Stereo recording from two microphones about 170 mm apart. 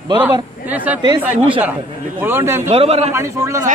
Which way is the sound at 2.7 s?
35° right (ahead or behind).